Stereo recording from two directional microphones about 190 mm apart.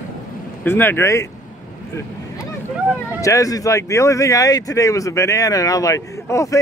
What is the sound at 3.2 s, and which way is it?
Speech, 15° left (ahead or behind).